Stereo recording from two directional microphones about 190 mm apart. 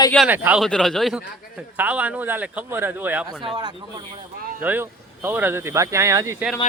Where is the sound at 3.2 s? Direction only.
20° right (ahead or behind).